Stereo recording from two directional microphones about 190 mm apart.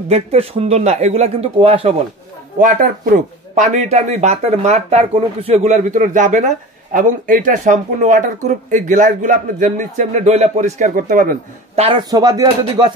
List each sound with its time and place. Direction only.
0.1 s speech: 35° right (ahead or behind)
2.6 s speech: 45° right (ahead or behind); by 12.9 s 20° right (ahead or behind)